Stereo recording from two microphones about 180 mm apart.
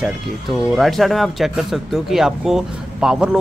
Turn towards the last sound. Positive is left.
turn(degrees=-5)  # may be behind; listen again after turning